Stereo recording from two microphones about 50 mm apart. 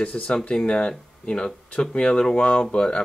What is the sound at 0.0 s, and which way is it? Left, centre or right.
Speech, left.